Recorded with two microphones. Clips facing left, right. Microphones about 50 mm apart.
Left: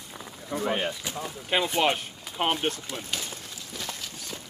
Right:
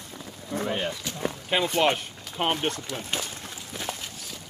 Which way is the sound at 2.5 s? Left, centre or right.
Centre.